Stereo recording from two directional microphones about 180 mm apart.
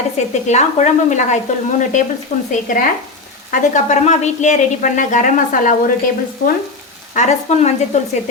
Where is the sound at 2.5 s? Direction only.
45° left (ahead or behind).